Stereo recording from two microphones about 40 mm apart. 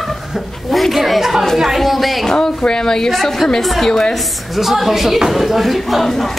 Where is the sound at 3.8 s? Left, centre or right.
Centre.